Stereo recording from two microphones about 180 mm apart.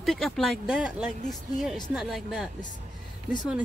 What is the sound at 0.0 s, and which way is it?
Speech, centre (ahead or behind).